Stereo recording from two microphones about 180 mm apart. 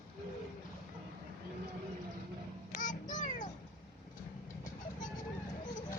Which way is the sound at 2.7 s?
45° left (ahead or behind).